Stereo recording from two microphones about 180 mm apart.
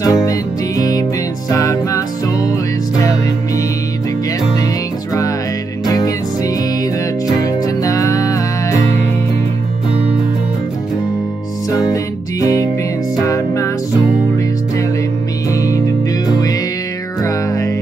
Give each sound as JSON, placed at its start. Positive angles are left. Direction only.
{"t": 0.0, "sound": "music", "side_deg": 20}
{"t": 5.9, "sound": "music", "side_deg": 20}
{"t": 11.9, "sound": "music", "side_deg": 20}
{"t": 15.5, "sound": "music", "side_deg": 20}